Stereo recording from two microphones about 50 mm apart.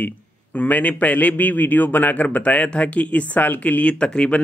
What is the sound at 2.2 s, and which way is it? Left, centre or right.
A man's voice, left.